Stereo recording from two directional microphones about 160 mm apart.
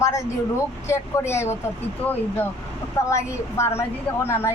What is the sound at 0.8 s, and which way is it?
Speech, 15° left (ahead or behind).